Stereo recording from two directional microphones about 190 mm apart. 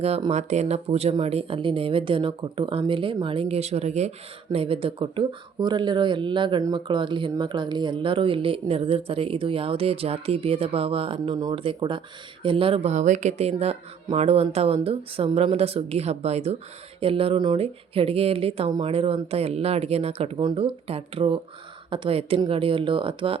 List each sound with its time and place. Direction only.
0.0 s speech: 30° right (ahead or behind)